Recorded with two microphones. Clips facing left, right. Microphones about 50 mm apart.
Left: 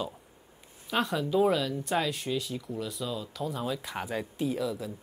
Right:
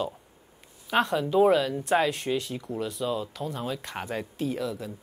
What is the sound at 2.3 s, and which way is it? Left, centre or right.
Speech, centre.